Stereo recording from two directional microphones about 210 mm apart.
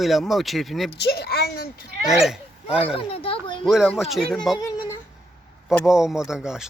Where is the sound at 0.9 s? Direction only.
50° left (ahead or behind).